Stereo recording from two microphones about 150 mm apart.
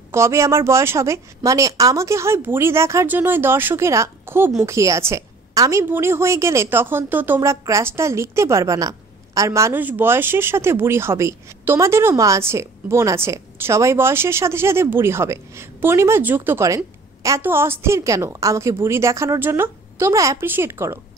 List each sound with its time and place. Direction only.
0.1 s a woman's voice: 20° right (ahead or behind)